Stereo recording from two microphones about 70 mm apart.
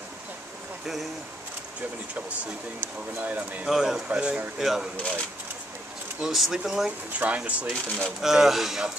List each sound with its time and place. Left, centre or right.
2.1 s speech: centre
3.6 s speech: centre
4.9 s speech: centre
6.2 s speech: centre
7.2 s speech: centre
8.2 s speech: centre